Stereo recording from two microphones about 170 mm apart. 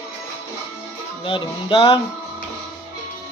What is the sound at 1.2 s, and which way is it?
Music, 30° left (ahead or behind).